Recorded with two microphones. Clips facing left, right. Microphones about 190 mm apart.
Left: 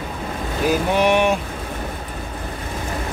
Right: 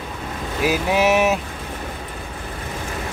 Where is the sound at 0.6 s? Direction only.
5° right (ahead or behind).